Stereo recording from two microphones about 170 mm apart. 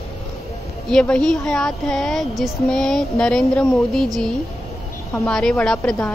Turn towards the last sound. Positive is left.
turn(degrees=5)  # may be behind; listen again after turning